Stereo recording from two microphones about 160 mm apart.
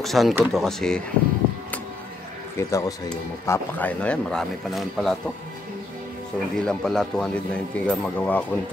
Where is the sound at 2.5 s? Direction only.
20° left (ahead or behind); by 5.3 s centre (ahead or behind).